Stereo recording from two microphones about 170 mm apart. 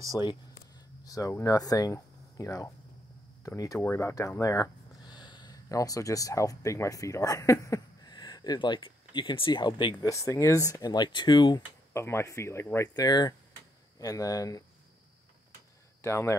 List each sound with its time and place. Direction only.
0.2 s speech: 25° left (ahead or behind)
11.9 s speech: 15° left (ahead or behind)
16.0 s speech: 15° left (ahead or behind)